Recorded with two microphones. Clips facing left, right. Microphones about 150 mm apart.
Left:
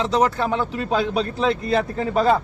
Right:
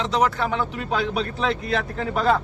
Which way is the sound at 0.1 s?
35° left (ahead or behind).